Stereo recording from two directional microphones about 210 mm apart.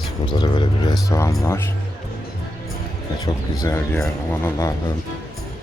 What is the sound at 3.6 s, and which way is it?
Speech, 15° left (ahead or behind).